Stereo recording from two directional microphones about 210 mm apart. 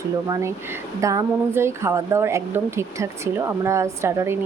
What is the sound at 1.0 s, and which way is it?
A woman's voice, 15° right (ahead or behind).